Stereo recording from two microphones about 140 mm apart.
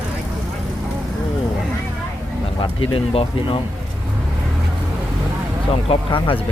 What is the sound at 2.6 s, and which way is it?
Speech, 40° left (ahead or behind).